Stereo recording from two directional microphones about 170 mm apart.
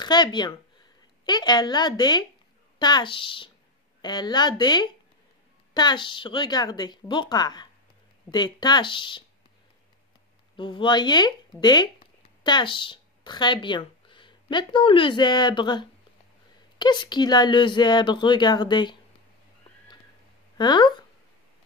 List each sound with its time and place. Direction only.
0.0 s a woman's voice: 25° left (ahead or behind)
10.5 s a woman's voice: 30° left (ahead or behind)
20.5 s speech: 25° left (ahead or behind)